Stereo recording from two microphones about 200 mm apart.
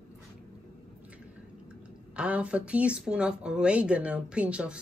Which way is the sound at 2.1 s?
5° right (ahead or behind).